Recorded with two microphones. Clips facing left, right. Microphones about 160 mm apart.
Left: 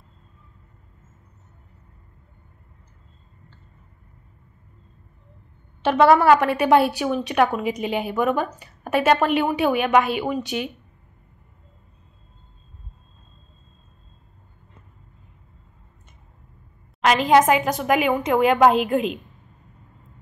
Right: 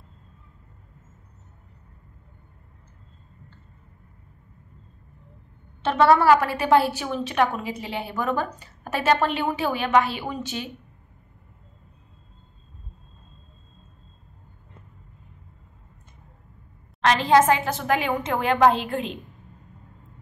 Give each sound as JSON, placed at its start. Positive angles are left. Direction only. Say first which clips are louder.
{"t": 6.0, "sound": "a woman's voice", "louder": "left 2 dB", "side_deg": 20}
{"t": 17.0, "sound": "a woman's voice", "louder": "left 2 dB", "side_deg": 15}